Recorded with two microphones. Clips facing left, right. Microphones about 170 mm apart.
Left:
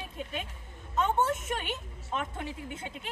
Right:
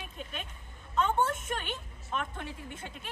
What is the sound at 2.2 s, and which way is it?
Speech, 25° left (ahead or behind).